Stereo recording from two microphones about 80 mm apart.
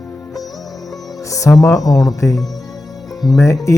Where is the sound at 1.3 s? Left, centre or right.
Left.